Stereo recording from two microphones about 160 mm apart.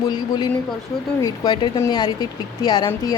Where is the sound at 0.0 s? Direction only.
25° left (ahead or behind).